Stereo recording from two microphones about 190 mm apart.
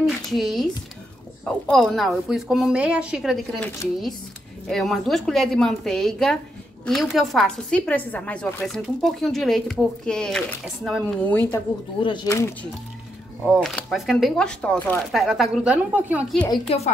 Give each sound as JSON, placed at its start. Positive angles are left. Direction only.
{"t": 0.0, "sound": "a woman's voice", "side_deg": 0}
{"t": 12.0, "sound": "speech", "side_deg": 25}
{"t": 13.5, "sound": "a woman's voice", "side_deg": 0}
{"t": 16.6, "sound": "a woman's voice", "side_deg": 35}